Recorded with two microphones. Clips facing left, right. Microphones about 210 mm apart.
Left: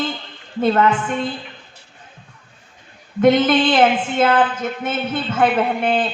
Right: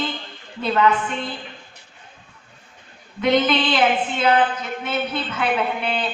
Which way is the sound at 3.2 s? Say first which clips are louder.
Left 5 dB; 50° left (ahead or behind).